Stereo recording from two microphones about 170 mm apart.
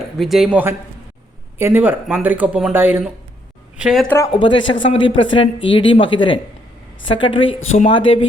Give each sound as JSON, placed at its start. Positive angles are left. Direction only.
{"t": 0.2, "sound": "speech", "side_deg": 0}
{"t": 4.3, "sound": "a woman's voice", "side_deg": 30}